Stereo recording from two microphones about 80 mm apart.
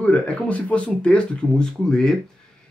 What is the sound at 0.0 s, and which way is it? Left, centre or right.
Speech, centre.